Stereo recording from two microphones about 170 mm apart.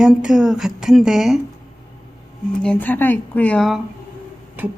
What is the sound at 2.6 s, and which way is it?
Speech, 10° left (ahead or behind).